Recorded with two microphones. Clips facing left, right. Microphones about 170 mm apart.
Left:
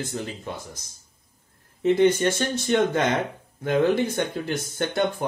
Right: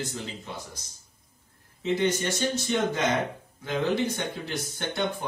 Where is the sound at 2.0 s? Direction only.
55° left (ahead or behind).